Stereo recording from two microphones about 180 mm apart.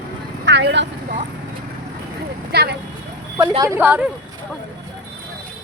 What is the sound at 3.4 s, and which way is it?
Speech, 20° right (ahead or behind).